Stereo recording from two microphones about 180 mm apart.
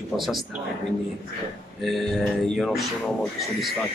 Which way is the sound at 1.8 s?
Centre (ahead or behind).